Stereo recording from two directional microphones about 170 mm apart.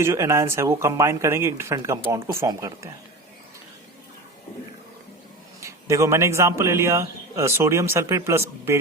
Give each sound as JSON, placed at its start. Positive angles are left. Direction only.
{"t": 0.0, "sound": "speech", "side_deg": -15}
{"t": 5.5, "sound": "speech", "side_deg": -20}